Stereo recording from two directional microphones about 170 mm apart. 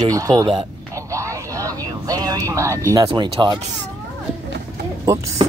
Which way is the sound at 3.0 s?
30° right (ahead or behind).